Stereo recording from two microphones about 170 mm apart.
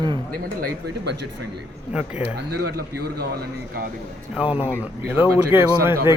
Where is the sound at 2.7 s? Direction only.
65° right (ahead or behind).